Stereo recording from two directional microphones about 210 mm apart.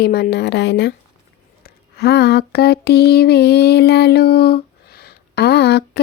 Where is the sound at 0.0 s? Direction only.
50° left (ahead or behind).